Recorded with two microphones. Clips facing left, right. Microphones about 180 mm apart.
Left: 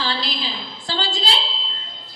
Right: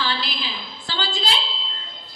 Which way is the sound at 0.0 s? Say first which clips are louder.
Left 1 dB; 40° left (ahead or behind).